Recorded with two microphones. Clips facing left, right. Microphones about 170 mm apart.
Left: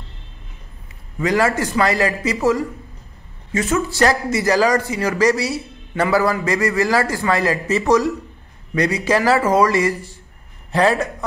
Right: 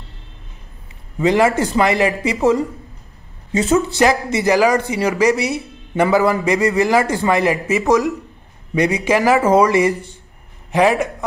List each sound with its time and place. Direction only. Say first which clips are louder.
1.2 s speech: right 3 dB; 25° right (ahead or behind)
3.7 s speech: right 3 dB; 15° right (ahead or behind)